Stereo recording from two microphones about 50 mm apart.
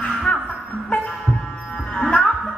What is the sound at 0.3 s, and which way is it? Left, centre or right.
Music, left.